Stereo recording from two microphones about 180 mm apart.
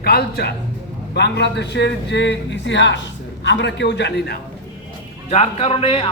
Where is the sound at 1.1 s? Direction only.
70° left (ahead or behind).